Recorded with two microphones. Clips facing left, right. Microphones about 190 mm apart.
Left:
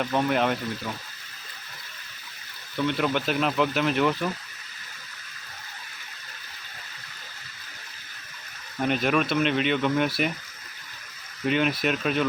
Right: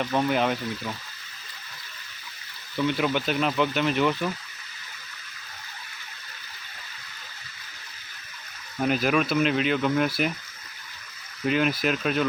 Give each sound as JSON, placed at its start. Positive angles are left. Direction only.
{"t": 0.0, "sound": "speech", "side_deg": 0}
{"t": 2.7, "sound": "speech", "side_deg": 0}
{"t": 8.8, "sound": "speech", "side_deg": 0}
{"t": 11.4, "sound": "speech", "side_deg": 0}